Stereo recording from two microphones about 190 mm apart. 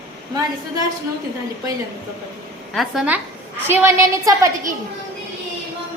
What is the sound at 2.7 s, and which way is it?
Speech, centre (ahead or behind).